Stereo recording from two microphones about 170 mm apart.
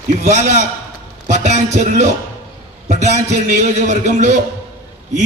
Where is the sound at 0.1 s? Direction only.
45° right (ahead or behind).